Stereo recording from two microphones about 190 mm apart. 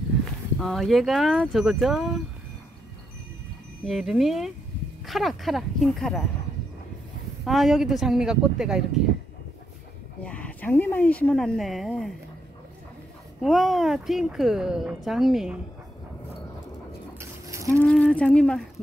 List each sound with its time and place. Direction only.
0.6 s speech: centre (ahead or behind)
3.8 s speech: centre (ahead or behind)
7.4 s speech: centre (ahead or behind)
10.2 s speech: 5° left (ahead or behind)
13.4 s speech: centre (ahead or behind)
17.2 s a sound: 15° right (ahead or behind)
17.6 s speech: 5° left (ahead or behind)